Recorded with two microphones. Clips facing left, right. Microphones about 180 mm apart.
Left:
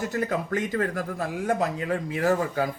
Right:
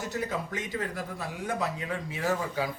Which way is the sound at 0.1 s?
55° left (ahead or behind).